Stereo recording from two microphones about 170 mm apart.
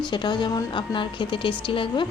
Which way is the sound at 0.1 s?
25° left (ahead or behind).